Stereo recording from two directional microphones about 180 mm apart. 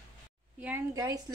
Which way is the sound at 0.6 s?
10° right (ahead or behind).